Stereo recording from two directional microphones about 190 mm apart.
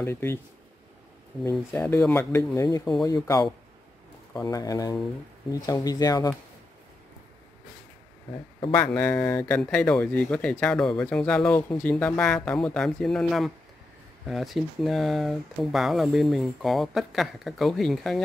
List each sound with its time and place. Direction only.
0.0 s speech: 10° left (ahead or behind)
1.4 s speech: 10° left (ahead or behind)
8.9 s speech: 10° left (ahead or behind)